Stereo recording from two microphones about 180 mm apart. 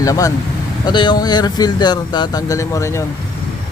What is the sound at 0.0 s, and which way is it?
Speech, 20° left (ahead or behind).